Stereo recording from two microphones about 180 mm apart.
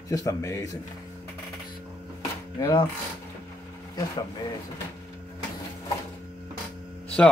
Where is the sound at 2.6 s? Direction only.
25° left (ahead or behind).